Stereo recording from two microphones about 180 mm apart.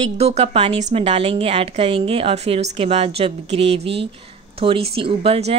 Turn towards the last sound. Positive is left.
turn(degrees=-35)  # may be behind; listen again after turning